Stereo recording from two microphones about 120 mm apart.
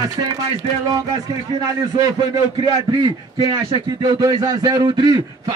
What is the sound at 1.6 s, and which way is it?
A man's voice, 30° right (ahead or behind).